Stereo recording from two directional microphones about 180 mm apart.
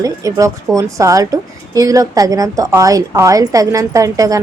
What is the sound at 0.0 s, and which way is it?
A woman's voice, 20° right (ahead or behind).